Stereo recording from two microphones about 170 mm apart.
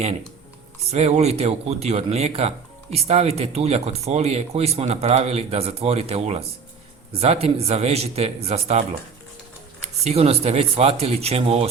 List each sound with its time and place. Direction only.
0.9 s speech: 40° right (ahead or behind)
10.0 s speech: 40° right (ahead or behind)